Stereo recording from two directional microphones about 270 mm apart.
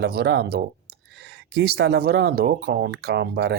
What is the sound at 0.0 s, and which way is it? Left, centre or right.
Speech, right.